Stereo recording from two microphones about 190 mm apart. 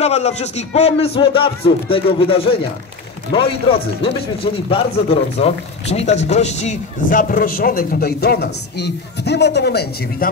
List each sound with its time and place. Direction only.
0.0 s speech: 35° left (ahead or behind); by 10.3 s 60° left (ahead or behind)